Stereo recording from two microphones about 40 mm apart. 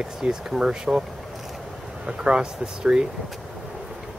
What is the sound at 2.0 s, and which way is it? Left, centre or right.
Speech, right.